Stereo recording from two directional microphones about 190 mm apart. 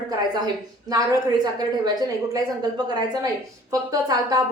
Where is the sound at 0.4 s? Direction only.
20° right (ahead or behind).